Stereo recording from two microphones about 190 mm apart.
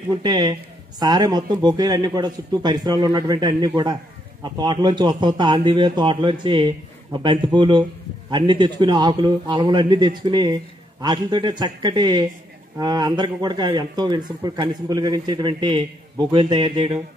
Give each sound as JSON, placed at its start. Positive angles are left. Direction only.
{"t": 0.1, "sound": "a man's voice", "side_deg": -25}